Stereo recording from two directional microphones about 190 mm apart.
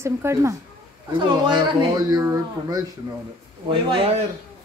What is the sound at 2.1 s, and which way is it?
Speech, 20° right (ahead or behind).